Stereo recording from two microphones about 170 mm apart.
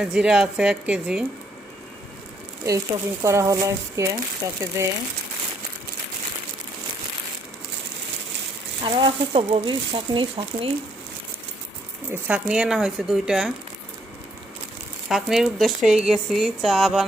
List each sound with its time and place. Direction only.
0.0 s speech: 5° right (ahead or behind)
2.6 s speech: 20° right (ahead or behind)
8.8 s speech: 30° right (ahead or behind)
12.1 s speech: 5° right (ahead or behind)
15.1 s speech: centre (ahead or behind)